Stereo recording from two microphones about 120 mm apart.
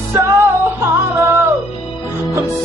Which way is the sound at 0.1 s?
25° right (ahead or behind).